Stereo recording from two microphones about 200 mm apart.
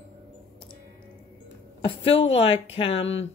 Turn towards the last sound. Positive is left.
turn(degrees=70)  # may be behind; listen again after turning